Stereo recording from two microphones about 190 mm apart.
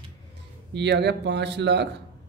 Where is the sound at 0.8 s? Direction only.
65° right (ahead or behind).